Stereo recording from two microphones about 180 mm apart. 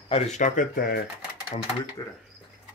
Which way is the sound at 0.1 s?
45° left (ahead or behind).